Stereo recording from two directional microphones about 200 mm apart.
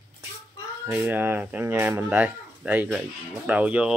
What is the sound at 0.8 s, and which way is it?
Speech, 10° right (ahead or behind).